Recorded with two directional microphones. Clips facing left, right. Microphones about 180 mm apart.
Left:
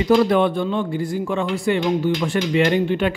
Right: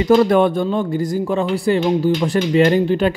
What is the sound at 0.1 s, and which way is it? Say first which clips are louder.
Speech: right 3 dB; 45° right (ahead or behind).